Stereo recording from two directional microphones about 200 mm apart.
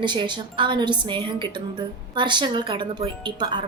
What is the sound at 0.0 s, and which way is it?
A woman's voice, 25° right (ahead or behind).